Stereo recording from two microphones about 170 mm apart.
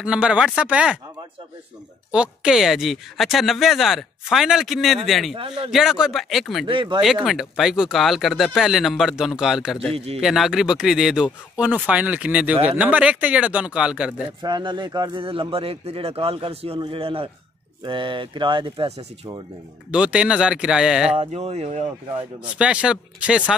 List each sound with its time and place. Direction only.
0.0 s speech: 5° right (ahead or behind)
2.1 s speech: 5° right (ahead or behind)
5.3 s speech: 30° right (ahead or behind)
5.7 s speech: 5° right (ahead or behind)
6.6 s speech: 30° right (ahead or behind)
7.2 s speech: centre (ahead or behind)
9.9 s speech: 35° right (ahead or behind)
10.2 s speech: centre (ahead or behind)
14.4 s speech: 25° right (ahead or behind)
19.9 s speech: 5° right (ahead or behind)
21.2 s speech: 35° right (ahead or behind)
22.4 s speech: 5° right (ahead or behind)